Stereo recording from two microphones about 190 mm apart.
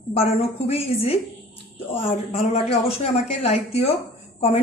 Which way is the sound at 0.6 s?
30° left (ahead or behind).